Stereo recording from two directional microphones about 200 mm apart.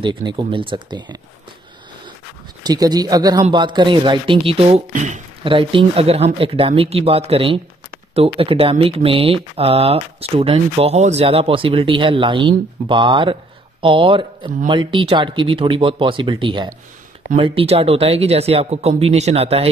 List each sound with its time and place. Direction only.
0.0 s speech: 25° right (ahead or behind)
2.6 s speech: 20° right (ahead or behind); by 5.2 s 35° right (ahead or behind)
5.4 s speech: 25° right (ahead or behind)